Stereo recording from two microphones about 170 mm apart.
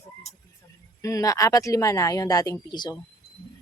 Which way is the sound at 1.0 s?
20° left (ahead or behind).